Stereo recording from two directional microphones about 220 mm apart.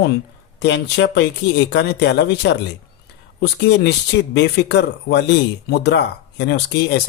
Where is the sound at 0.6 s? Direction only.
50° left (ahead or behind).